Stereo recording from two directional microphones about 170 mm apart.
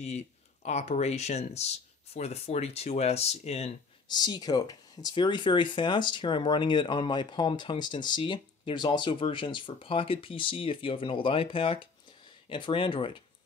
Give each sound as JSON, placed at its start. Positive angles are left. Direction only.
{"t": 0.7, "sound": "speech", "side_deg": 40}
{"t": 4.1, "sound": "speech", "side_deg": 25}